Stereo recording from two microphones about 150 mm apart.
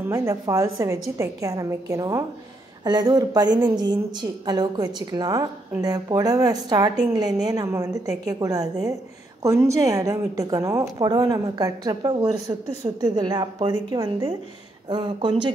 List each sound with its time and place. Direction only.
0.1 s a woman's voice: 20° right (ahead or behind)